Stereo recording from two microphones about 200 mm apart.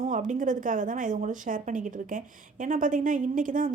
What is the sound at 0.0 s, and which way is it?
Speech, 40° right (ahead or behind).